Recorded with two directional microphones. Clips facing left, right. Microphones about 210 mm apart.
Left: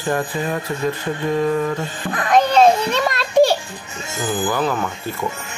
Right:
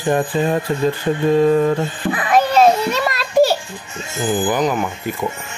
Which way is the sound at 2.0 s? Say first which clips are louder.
Even; 5° right (ahead or behind).